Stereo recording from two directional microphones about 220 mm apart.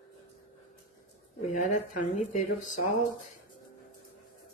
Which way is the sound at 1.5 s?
35° left (ahead or behind).